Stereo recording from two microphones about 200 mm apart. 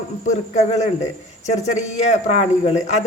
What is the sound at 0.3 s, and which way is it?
Speech, 35° left (ahead or behind).